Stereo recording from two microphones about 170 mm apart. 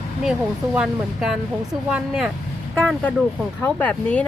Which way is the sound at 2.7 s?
5° left (ahead or behind).